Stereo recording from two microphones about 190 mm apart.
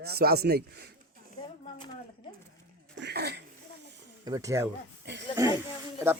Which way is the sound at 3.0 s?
60° right (ahead or behind).